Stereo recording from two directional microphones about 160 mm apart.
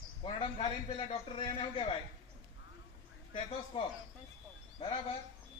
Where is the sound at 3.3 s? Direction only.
35° left (ahead or behind).